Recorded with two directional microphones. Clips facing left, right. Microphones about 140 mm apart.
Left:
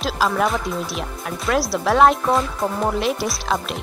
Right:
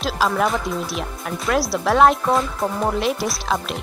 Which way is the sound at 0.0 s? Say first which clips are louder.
Even; centre (ahead or behind).